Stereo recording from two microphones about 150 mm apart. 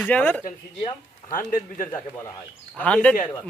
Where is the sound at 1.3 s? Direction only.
65° left (ahead or behind).